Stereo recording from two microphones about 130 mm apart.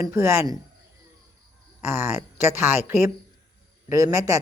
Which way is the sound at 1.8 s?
20° right (ahead or behind).